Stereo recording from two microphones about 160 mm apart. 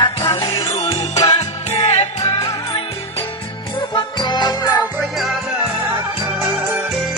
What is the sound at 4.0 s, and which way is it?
Music, 30° left (ahead or behind).